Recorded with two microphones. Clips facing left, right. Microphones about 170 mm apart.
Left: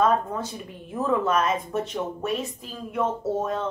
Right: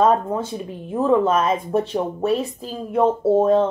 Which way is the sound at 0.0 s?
25° right (ahead or behind).